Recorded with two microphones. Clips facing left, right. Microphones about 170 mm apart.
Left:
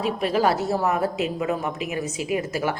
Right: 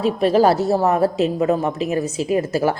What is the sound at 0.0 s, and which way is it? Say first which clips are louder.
A woman's voice: right 6 dB; 30° right (ahead or behind).